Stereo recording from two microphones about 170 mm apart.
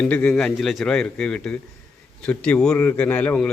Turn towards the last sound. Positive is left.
turn(degrees=10)  # may be behind; listen again after turning